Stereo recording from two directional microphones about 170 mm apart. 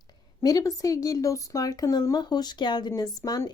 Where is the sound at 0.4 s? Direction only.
20° left (ahead or behind).